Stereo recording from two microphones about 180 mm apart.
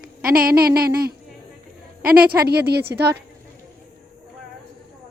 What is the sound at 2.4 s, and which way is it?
Speech, 65° right (ahead or behind).